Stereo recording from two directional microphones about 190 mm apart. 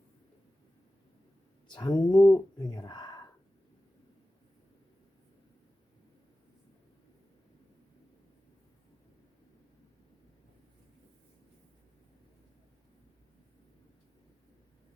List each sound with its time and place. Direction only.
1.7 s speech: 20° left (ahead or behind)